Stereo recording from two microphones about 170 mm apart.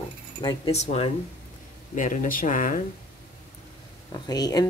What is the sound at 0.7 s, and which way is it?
Speech, 40° left (ahead or behind).